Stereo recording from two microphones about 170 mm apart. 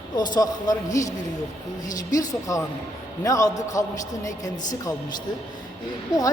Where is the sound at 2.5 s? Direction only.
20° left (ahead or behind).